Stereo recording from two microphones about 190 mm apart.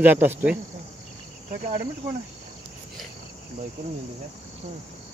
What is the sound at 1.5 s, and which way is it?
Cricket, 40° right (ahead or behind).